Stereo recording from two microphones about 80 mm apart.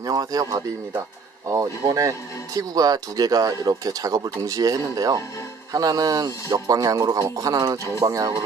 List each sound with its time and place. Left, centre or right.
0.0 s speech: right